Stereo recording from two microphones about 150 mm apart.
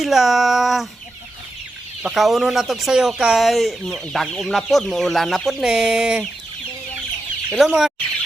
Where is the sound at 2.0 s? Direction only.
Centre (ahead or behind).